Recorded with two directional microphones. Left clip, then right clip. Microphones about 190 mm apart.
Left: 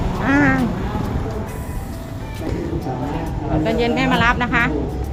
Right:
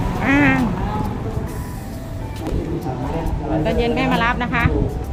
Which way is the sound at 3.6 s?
10° left (ahead or behind).